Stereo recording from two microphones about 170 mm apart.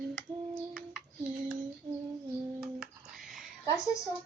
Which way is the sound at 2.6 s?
5° right (ahead or behind).